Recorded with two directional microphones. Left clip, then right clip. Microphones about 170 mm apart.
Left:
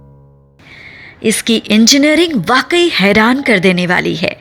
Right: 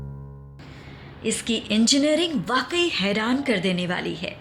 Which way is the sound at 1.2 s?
40° left (ahead or behind).